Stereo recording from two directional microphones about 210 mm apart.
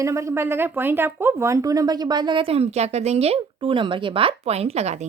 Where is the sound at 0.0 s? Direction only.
15° right (ahead or behind).